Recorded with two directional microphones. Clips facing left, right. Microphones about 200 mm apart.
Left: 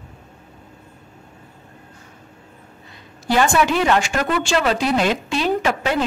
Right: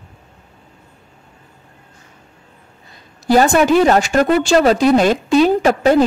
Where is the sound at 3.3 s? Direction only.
40° right (ahead or behind).